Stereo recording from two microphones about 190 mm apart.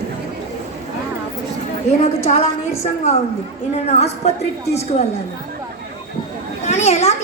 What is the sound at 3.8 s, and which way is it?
A woman's voice, 35° left (ahead or behind).